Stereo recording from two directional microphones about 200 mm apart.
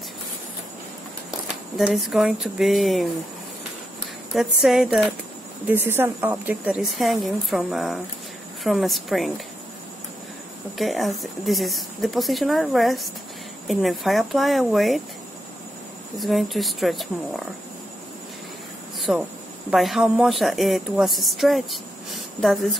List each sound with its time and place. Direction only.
1.8 s a woman's voice: centre (ahead or behind)
4.3 s a woman's voice: centre (ahead or behind)
10.8 s a woman's voice: centre (ahead or behind)
16.2 s a woman's voice: centre (ahead or behind)
18.9 s a sound: centre (ahead or behind)
19.7 s a woman's voice: centre (ahead or behind)